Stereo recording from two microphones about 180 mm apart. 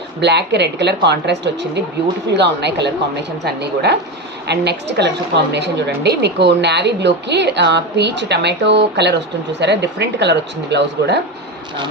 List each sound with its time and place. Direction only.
0.2 s a woman's voice: 70° right (ahead or behind)